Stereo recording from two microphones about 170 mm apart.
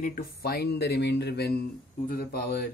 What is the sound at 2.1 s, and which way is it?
Speech, 60° left (ahead or behind).